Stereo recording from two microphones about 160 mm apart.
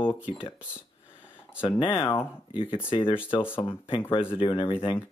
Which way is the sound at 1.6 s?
30° left (ahead or behind).